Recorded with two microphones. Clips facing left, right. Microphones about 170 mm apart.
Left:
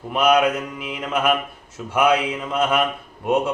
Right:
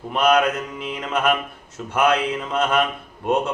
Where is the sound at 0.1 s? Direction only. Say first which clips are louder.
Left 1 dB; 10° left (ahead or behind).